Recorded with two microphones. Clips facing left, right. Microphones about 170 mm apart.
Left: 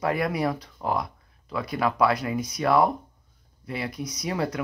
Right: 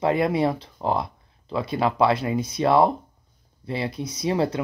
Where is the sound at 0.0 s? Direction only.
25° right (ahead or behind).